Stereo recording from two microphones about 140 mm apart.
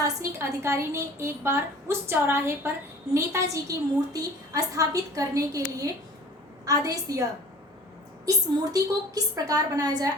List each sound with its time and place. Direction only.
0.0 s a woman's voice: 20° right (ahead or behind)
8.7 s a woman's voice: 25° right (ahead or behind)